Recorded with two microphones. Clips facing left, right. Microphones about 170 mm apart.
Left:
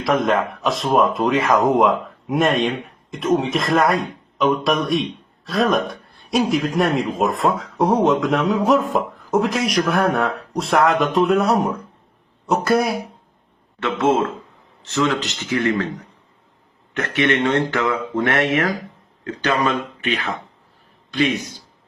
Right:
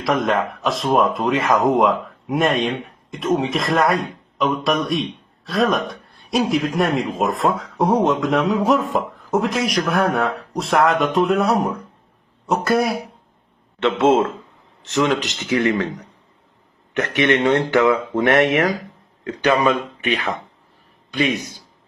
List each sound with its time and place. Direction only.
0.0 s a man's voice: centre (ahead or behind)
13.8 s speech: 20° right (ahead or behind)
17.2 s a man's voice: 20° right (ahead or behind)